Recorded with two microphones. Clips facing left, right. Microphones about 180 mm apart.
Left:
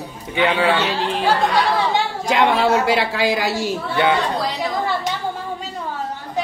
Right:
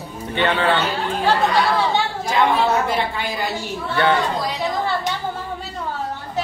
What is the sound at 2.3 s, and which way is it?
A woman's voice, 80° left.